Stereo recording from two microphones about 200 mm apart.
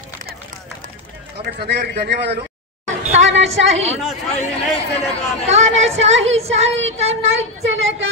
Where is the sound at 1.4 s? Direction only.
55° right (ahead or behind).